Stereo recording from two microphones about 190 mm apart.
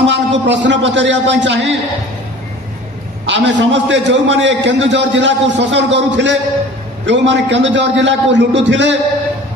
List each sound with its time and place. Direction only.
0.0 s a man's voice: 70° right (ahead or behind)
3.3 s a man's voice: 70° right (ahead or behind)